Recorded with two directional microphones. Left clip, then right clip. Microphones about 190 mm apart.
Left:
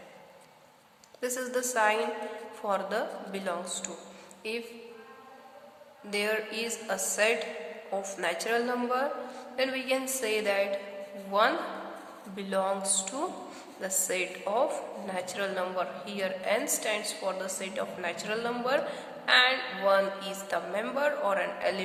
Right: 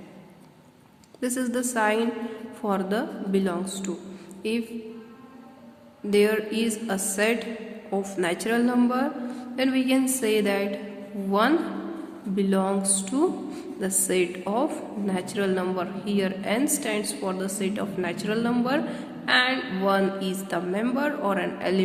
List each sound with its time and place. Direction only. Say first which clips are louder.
1.2 s a woman's voice: right 3 dB; 15° right (ahead or behind)
6.1 s a woman's voice: right 8 dB; 15° right (ahead or behind)